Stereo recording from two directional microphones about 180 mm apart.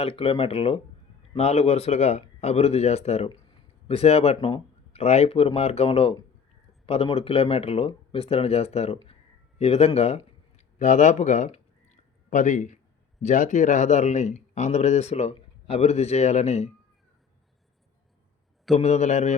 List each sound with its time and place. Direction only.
0.0 s speech: 30° left (ahead or behind)
10.8 s a sound: 45° left (ahead or behind)
13.2 s speech: 45° left (ahead or behind)
18.8 s speech: 40° left (ahead or behind)